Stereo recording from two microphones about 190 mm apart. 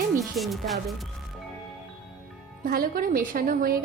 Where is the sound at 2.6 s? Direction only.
50° right (ahead or behind).